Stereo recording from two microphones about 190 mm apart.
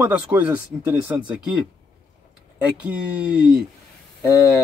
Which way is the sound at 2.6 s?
5° right (ahead or behind).